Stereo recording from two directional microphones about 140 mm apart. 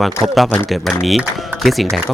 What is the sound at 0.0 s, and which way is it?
Speech, centre (ahead or behind).